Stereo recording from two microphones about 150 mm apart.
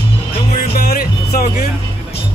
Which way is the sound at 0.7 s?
80° left.